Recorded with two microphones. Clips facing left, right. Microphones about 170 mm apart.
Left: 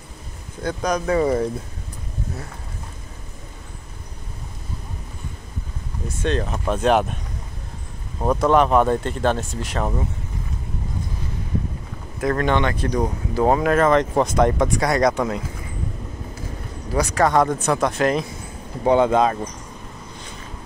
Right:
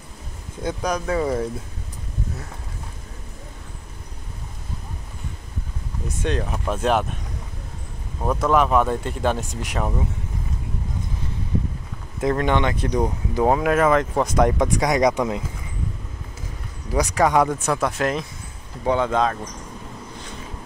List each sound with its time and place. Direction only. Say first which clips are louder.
0.8 s speech: left 4 dB; 5° right (ahead or behind)
6.0 s speech: left 2 dB; 10° right (ahead or behind)
8.4 s speech: left 2 dB; centre (ahead or behind)
12.2 s speech: even; 20° right (ahead or behind)
13.4 s speech: left 1 dB; 5° right (ahead or behind)
16.9 s speech: even; 15° right (ahead or behind)
18.9 s speech: left 4 dB; 15° left (ahead or behind)